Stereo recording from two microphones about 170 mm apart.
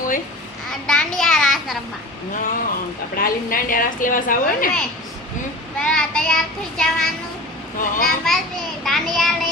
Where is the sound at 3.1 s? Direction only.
55° left (ahead or behind).